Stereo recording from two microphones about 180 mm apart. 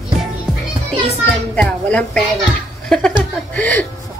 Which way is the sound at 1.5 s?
5° left (ahead or behind).